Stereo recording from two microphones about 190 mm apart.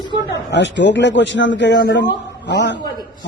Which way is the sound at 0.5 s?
70° left (ahead or behind).